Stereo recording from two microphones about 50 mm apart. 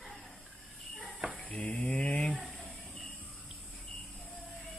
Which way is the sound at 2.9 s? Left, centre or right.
Centre.